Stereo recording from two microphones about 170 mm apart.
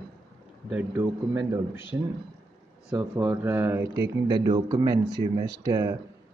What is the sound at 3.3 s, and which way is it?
A man's voice, 10° right (ahead or behind).